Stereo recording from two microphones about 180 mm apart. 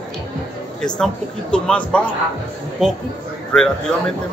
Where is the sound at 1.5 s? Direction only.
5° left (ahead or behind).